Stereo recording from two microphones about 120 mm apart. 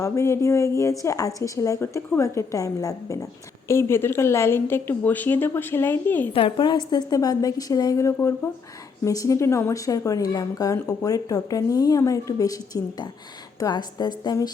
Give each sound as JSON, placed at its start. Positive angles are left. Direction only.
{"t": 0.0, "sound": "speech", "side_deg": 25}
{"t": 6.3, "sound": "a woman's voice", "side_deg": 45}